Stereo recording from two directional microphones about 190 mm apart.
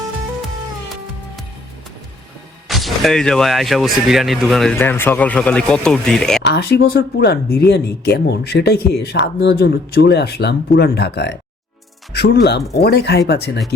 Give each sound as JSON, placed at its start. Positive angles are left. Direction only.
{"t": 2.6, "sound": "speech", "side_deg": 0}
{"t": 4.8, "sound": "speech", "side_deg": 10}
{"t": 6.4, "sound": "speech", "side_deg": 60}